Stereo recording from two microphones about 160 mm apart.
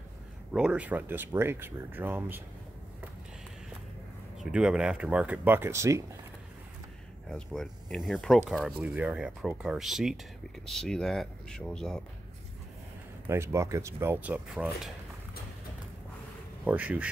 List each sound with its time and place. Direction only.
0.5 s speech: 5° right (ahead or behind)
4.4 s speech: 5° right (ahead or behind)
7.2 s speech: 5° left (ahead or behind)
13.3 s speech: 15° right (ahead or behind)
16.6 s speech: 10° right (ahead or behind)